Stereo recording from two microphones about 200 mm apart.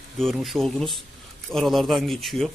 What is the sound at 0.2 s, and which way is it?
A man's voice, centre (ahead or behind).